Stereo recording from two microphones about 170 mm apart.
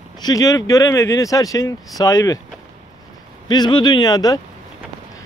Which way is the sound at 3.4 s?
25° left (ahead or behind).